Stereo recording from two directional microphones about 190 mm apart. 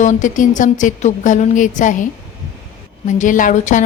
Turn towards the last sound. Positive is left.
turn(degrees=40)  # may be behind; listen again after turning